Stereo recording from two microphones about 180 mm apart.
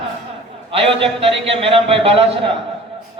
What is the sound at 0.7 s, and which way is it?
A man's voice, 30° right (ahead or behind).